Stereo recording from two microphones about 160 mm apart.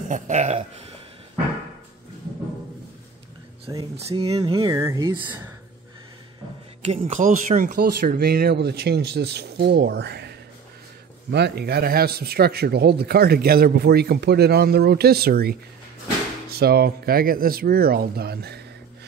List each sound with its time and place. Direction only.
0.1 s speech: 45° right (ahead or behind)
3.7 s speech: 20° right (ahead or behind)
5.2 s speech: 10° right (ahead or behind)
7.0 s speech: 55° right (ahead or behind)
7.7 s a man's voice: 75° right (ahead or behind)